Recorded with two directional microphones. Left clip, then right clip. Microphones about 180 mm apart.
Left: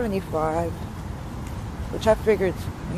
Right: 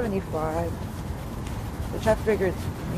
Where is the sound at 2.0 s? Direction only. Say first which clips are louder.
Left 3 dB; 30° left (ahead or behind).